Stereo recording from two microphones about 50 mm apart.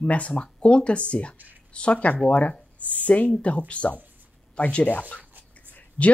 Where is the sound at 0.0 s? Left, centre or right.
Left.